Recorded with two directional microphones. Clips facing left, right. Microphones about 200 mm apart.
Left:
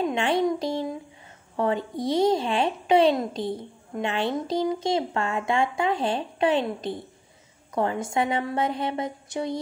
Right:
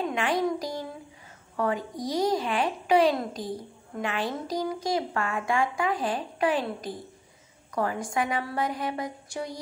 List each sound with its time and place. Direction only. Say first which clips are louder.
0.1 s a woman's voice: left 3 dB; 25° left (ahead or behind)